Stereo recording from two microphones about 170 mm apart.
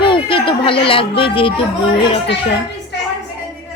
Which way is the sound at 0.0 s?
30° left (ahead or behind).